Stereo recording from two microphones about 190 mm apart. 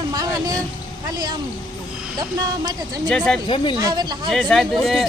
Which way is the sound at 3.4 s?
25° left (ahead or behind).